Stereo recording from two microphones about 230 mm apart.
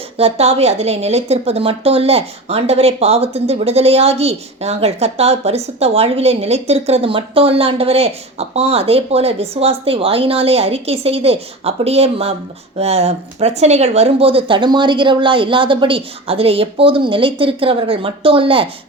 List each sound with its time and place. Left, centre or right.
0.2 s a woman's voice: right